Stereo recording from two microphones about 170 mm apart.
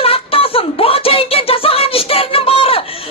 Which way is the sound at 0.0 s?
35° left (ahead or behind).